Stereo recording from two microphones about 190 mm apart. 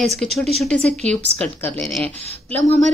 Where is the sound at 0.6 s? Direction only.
5° left (ahead or behind).